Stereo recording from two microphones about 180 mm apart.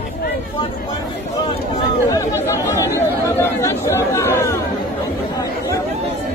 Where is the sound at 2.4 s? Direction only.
15° left (ahead or behind).